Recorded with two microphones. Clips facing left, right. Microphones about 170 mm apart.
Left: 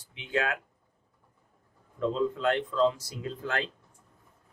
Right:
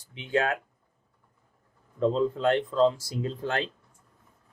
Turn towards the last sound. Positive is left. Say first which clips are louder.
# right 3 dB
turn(degrees=-30)  # may be behind; listen again after turning